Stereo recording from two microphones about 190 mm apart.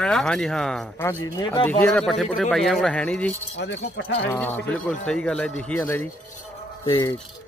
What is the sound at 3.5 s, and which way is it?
Speech, 70° left (ahead or behind).